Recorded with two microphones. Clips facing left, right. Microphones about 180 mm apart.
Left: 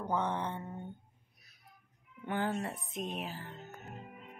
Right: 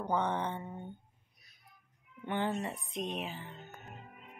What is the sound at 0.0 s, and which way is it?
Speech, 5° left (ahead or behind).